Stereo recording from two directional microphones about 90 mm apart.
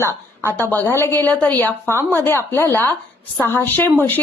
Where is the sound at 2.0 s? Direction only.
30° right (ahead or behind).